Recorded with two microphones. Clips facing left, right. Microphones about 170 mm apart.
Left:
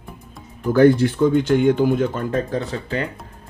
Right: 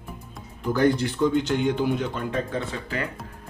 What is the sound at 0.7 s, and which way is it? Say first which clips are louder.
Speech: left 8 dB; 50° left (ahead or behind).